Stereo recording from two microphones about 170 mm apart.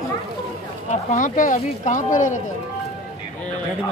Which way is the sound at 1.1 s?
50° left (ahead or behind).